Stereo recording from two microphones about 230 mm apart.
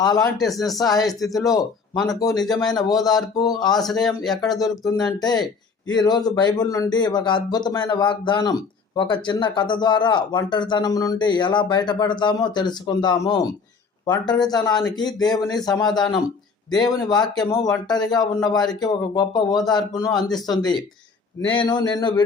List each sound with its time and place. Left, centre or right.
0.0 s speech: centre
0.5 s speech: centre
0.8 s speech: centre
3.8 s speech: centre
4.5 s speech: centre